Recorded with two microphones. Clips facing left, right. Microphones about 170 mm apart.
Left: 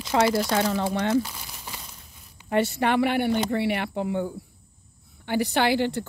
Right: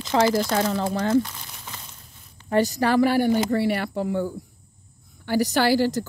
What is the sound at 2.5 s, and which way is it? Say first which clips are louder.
A woman's voice: right 2 dB; 35° right (ahead or behind).